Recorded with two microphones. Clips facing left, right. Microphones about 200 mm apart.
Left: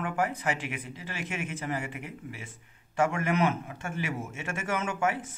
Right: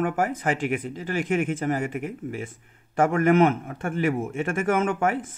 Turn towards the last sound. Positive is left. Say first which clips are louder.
# right 7 dB
turn(degrees=-55)  # may be behind; listen again after turning